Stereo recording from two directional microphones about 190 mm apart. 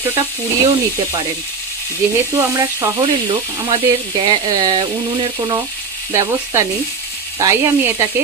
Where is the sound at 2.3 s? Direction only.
15° right (ahead or behind).